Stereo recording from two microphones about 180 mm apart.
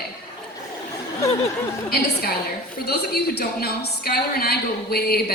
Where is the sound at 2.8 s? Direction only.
60° left (ahead or behind).